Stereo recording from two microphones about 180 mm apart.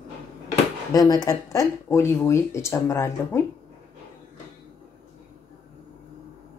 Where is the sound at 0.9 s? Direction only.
20° left (ahead or behind).